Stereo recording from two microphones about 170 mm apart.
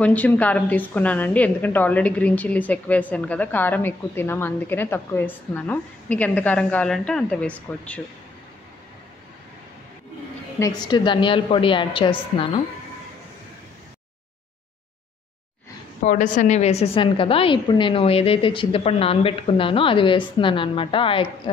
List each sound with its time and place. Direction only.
0.0 s a woman's voice: 10° left (ahead or behind)
10.6 s a woman's voice: 25° left (ahead or behind)
16.0 s a woman's voice: 50° left (ahead or behind); by 21.3 s 30° left (ahead or behind)